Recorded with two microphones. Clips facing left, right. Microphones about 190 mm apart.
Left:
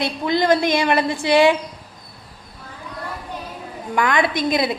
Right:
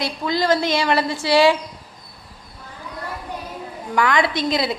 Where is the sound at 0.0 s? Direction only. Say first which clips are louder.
Left 2 dB; 20° left (ahead or behind).